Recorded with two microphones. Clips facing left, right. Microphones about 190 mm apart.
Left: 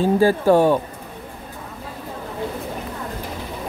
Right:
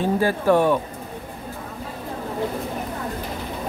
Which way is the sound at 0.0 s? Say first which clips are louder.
Left 4 dB; 30° left (ahead or behind).